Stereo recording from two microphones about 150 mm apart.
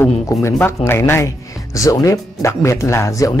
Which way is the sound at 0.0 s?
20° left (ahead or behind).